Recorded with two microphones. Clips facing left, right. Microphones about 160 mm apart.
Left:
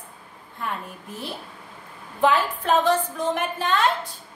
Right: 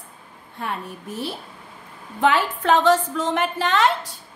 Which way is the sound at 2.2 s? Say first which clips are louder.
Right 1 dB; 80° right.